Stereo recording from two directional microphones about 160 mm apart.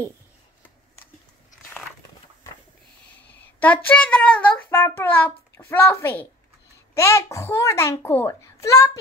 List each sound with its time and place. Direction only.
3.5 s child singing: 10° left (ahead or behind)
7.0 s a child's voice: 15° left (ahead or behind)